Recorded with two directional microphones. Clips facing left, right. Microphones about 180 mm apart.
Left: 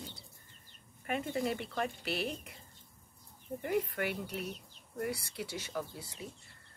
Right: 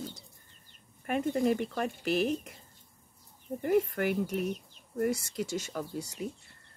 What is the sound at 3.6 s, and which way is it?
Speech, 45° right (ahead or behind).